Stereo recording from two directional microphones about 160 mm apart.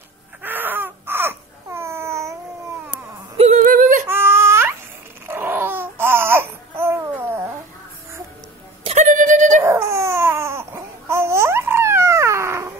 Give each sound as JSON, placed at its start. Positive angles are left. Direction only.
{"t": 0.4, "sound": "a sound", "side_deg": -10}
{"t": 3.6, "sound": "yodeling", "side_deg": -55}
{"t": 4.1, "sound": "baby cry", "side_deg": -15}
{"t": 5.2, "sound": "babbling", "side_deg": -15}
{"t": 8.8, "sound": "a sound", "side_deg": -50}
{"t": 9.6, "sound": "baby cry", "side_deg": -15}